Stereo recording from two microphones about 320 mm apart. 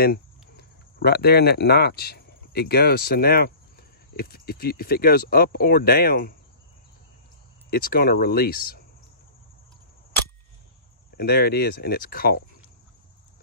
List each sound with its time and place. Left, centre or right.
0.0 s speech: left
7.7 s speech: left
11.1 s speech: left